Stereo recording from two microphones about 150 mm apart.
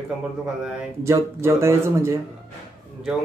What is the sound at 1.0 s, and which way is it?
Speech, 20° right (ahead or behind).